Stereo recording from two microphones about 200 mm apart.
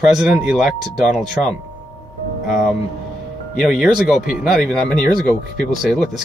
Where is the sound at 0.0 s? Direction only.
Centre (ahead or behind).